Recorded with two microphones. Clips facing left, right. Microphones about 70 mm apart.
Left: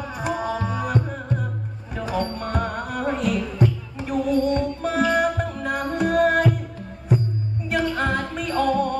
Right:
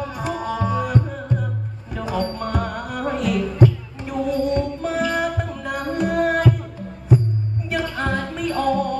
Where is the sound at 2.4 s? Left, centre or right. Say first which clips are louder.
Right 1 dB; left.